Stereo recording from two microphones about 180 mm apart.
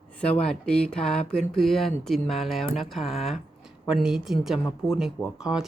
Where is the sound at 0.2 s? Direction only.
5° left (ahead or behind).